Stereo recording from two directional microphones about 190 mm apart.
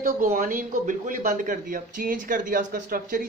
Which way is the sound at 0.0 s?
45° right (ahead or behind).